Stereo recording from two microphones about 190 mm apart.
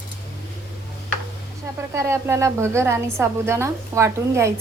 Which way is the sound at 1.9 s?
15° right (ahead or behind).